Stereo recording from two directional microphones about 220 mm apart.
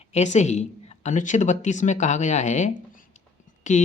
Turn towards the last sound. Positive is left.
turn(degrees=35)  # may be behind; listen again after turning